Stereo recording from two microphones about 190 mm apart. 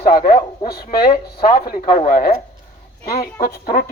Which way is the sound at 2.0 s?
45° left (ahead or behind).